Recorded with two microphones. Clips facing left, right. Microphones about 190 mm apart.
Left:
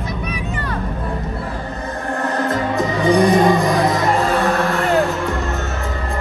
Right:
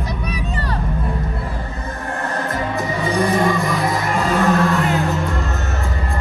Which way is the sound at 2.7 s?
15° left (ahead or behind).